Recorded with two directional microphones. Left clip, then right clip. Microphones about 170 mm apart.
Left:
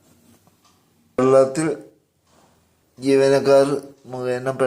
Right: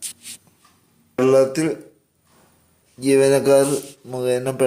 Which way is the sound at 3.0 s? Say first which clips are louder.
Even; 20° right (ahead or behind).